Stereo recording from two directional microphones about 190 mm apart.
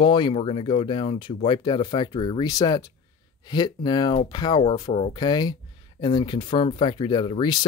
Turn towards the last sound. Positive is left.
turn(degrees=25)  # may be behind; listen again after turning